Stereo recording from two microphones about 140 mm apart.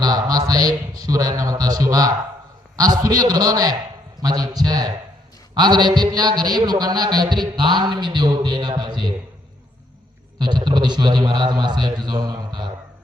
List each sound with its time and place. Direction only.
0.0 s a man's voice: 30° right (ahead or behind)
10.4 s a man's voice: 30° right (ahead or behind)